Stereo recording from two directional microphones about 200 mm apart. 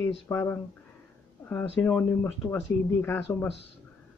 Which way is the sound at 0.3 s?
10° left (ahead or behind).